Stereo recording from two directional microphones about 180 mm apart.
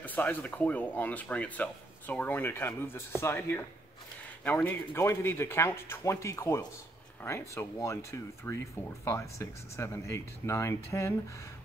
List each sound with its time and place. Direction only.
0.0 s speech: 10° left (ahead or behind)